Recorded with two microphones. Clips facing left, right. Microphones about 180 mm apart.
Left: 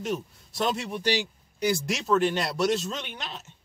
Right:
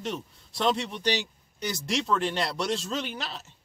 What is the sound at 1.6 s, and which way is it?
Speech, 5° left (ahead or behind).